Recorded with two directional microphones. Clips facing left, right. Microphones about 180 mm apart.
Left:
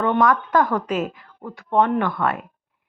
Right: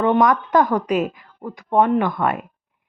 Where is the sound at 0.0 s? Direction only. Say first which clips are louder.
Right 2 dB; 15° right (ahead or behind).